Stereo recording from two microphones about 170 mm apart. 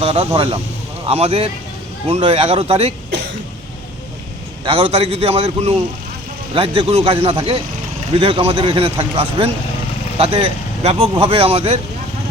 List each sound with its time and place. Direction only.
0.0 s a man's voice: 35° right (ahead or behind)
4.6 s a man's voice: 35° right (ahead or behind)